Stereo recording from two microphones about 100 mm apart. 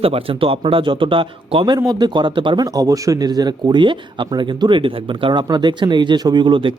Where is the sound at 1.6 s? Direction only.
45° right (ahead or behind).